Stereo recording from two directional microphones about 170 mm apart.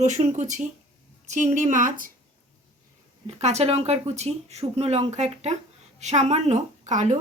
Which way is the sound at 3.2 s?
40° right (ahead or behind).